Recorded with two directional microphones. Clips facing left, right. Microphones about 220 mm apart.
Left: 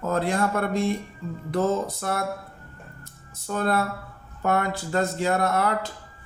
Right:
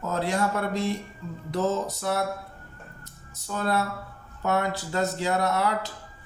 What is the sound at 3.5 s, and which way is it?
Speech, 50° left (ahead or behind).